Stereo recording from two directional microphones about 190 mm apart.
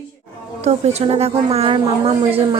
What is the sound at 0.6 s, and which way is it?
A woman's voice, 35° right (ahead or behind).